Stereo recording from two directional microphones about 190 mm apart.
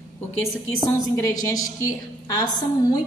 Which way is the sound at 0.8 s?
15° left (ahead or behind).